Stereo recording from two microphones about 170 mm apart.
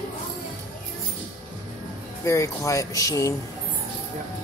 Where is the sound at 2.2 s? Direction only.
20° left (ahead or behind).